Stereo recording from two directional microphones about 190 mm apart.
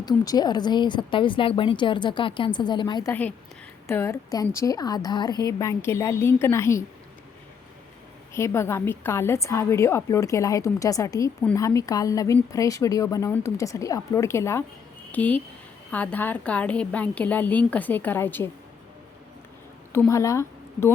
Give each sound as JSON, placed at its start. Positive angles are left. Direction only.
{"t": 0.0, "sound": "a woman's voice", "side_deg": 20}
{"t": 3.1, "sound": "a woman's voice", "side_deg": 10}
{"t": 8.3, "sound": "a woman's voice", "side_deg": 15}
{"t": 19.9, "sound": "a woman's voice", "side_deg": 15}